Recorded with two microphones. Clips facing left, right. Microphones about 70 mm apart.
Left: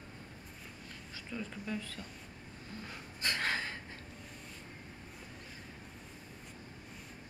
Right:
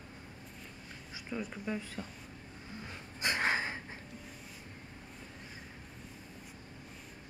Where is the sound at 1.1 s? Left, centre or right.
Centre.